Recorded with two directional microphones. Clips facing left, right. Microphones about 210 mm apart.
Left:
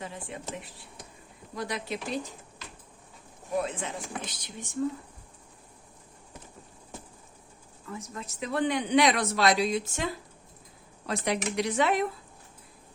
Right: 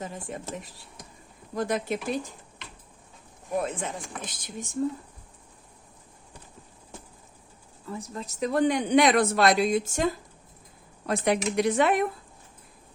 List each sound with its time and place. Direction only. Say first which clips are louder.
0.0 s a man's voice: right 3 dB; 45° right (ahead or behind)
3.6 s a man's voice: right 2 dB; 50° right (ahead or behind)
7.9 s a man's voice: right 4 dB; 35° right (ahead or behind); by 12.0 s 55° right (ahead or behind)